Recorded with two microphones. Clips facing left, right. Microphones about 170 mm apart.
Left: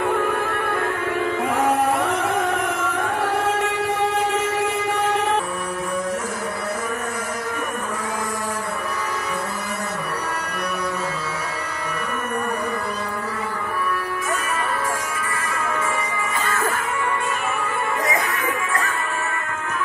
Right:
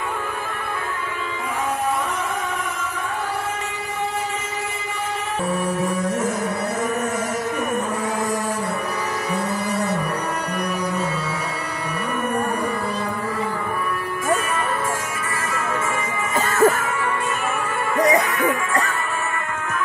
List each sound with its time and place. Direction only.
0.1 s music: 75° left (ahead or behind)
16.3 s music: 45° right (ahead or behind)